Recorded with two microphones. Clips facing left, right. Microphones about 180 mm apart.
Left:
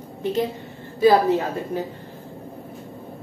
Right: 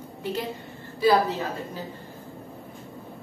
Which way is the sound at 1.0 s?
55° left (ahead or behind).